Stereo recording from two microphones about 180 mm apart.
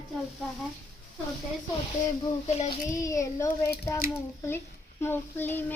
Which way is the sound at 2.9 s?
15° left (ahead or behind).